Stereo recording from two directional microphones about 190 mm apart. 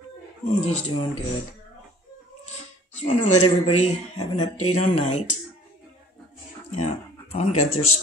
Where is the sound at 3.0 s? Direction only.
35° left (ahead or behind).